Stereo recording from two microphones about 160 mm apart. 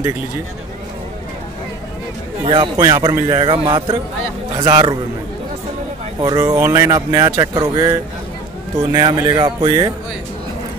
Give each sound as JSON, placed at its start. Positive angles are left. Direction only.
{"t": 2.4, "sound": "a man's voice", "side_deg": -30}
{"t": 2.8, "sound": "speech", "side_deg": -20}
{"t": 6.2, "sound": "speech", "side_deg": -20}